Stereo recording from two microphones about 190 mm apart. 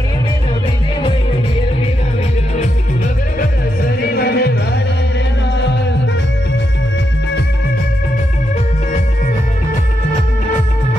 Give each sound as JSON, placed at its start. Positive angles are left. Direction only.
{"t": 4.0, "sound": "music", "side_deg": 55}